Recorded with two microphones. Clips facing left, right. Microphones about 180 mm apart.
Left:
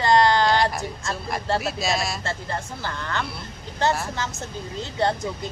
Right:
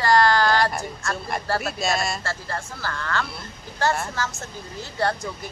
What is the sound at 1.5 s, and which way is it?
Speech, centre (ahead or behind).